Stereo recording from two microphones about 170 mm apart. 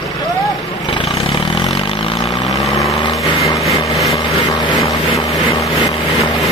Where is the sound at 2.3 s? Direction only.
Centre (ahead or behind).